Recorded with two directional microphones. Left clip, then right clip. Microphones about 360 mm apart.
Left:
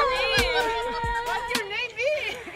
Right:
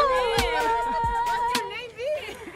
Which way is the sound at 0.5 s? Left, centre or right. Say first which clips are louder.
Right 2 dB; centre.